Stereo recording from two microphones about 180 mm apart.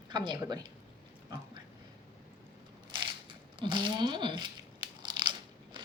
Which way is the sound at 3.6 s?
25° right (ahead or behind).